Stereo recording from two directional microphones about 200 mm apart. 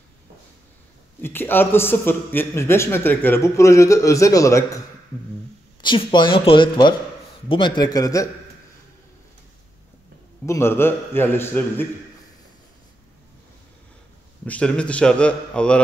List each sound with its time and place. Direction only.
1.2 s a man's voice: 10° left (ahead or behind)
10.4 s a man's voice: 15° left (ahead or behind)
14.4 s a man's voice: 5° left (ahead or behind)